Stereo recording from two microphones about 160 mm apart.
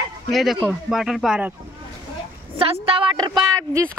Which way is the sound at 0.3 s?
Centre (ahead or behind).